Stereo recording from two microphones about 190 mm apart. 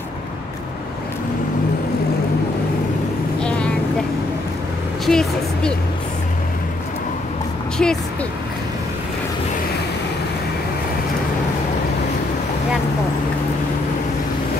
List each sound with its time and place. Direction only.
3.4 s a sound: 5° left (ahead or behind)
5.0 s a woman's voice: 5° left (ahead or behind)
7.7 s speech: 5° left (ahead or behind)